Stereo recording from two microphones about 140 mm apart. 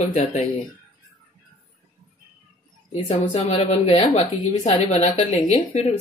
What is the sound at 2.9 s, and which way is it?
A woman's voice, 45° left (ahead or behind).